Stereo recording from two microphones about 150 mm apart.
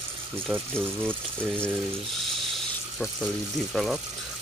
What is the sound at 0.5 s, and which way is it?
Speech, 15° right (ahead or behind).